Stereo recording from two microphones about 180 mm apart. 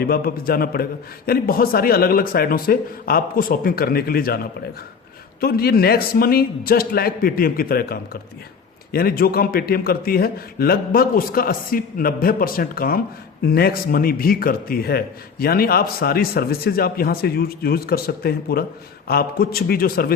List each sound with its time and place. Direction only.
0.0 s speech: 55° left (ahead or behind)
5.4 s speech: 60° left (ahead or behind)